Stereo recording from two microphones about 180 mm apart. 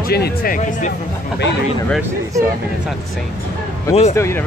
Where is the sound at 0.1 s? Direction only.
60° left (ahead or behind).